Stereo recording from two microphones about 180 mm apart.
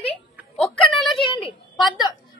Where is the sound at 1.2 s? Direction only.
30° left (ahead or behind).